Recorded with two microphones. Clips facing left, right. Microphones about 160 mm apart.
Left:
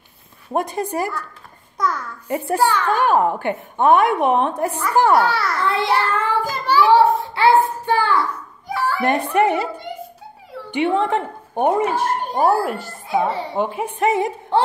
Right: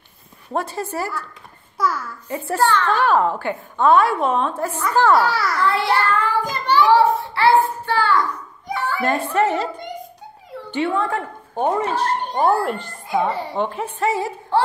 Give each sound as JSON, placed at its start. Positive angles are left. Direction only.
{"t": 0.5, "sound": "a woman's voice", "side_deg": 15}
{"t": 1.8, "sound": "a child's voice", "side_deg": -5}
{"t": 2.2, "sound": "a woman's voice", "side_deg": 10}
{"t": 5.1, "sound": "a child's voice", "side_deg": 0}
{"t": 5.6, "sound": "a child's voice", "side_deg": 20}
{"t": 6.0, "sound": "child singing", "side_deg": 20}
{"t": 6.5, "sound": "a sound", "side_deg": 5}
{"t": 7.3, "sound": "child singing", "side_deg": 20}
{"t": 8.6, "sound": "children playing", "side_deg": 5}
{"t": 9.0, "sound": "a woman's voice", "side_deg": 20}
{"t": 10.7, "sound": "a child's voice", "side_deg": 20}